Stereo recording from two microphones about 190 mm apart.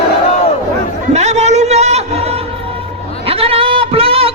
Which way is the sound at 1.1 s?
35° right (ahead or behind).